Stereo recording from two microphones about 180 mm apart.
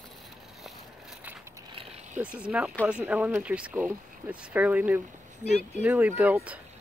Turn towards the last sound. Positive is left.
turn(degrees=-10)  # may be behind; listen again after turning